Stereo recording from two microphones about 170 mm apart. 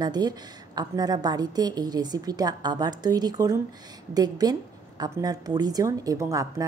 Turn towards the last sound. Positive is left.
turn(degrees=-20)  # may be behind; listen again after turning